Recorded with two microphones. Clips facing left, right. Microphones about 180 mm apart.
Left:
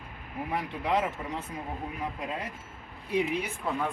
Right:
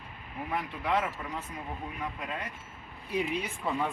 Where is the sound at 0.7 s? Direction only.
20° left (ahead or behind).